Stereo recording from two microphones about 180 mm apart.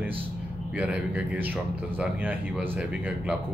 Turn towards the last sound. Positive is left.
turn(degrees=-10)  # may be behind; listen again after turning